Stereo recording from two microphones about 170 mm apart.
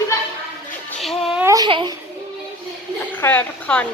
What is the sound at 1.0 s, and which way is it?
Music, centre (ahead or behind).